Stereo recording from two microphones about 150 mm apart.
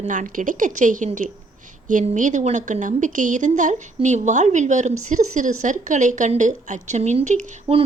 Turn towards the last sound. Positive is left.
turn(degrees=-50)  # may be behind; listen again after turning